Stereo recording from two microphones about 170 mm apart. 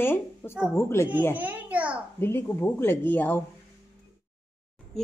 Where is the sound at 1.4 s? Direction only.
10° right (ahead or behind).